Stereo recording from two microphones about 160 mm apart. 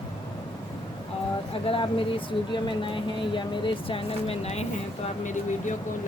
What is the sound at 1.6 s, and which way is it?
Speech, 35° left (ahead or behind).